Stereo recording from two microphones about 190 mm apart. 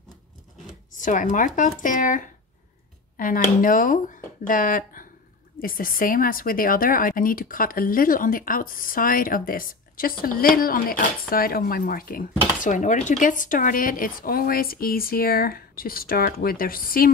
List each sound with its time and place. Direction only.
0.9 s speech: 45° left (ahead or behind)